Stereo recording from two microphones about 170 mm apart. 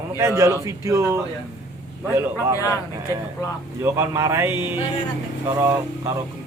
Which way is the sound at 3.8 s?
15° right (ahead or behind).